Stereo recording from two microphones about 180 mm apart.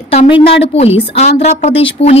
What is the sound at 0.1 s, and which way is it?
A woman's voice, 35° left (ahead or behind).